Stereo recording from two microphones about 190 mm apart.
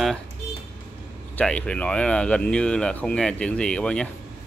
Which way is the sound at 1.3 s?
5° left (ahead or behind).